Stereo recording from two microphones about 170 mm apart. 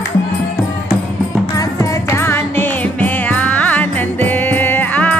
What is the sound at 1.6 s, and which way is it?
Music, 15° left (ahead or behind).